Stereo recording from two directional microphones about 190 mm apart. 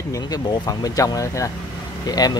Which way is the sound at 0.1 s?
20° left (ahead or behind).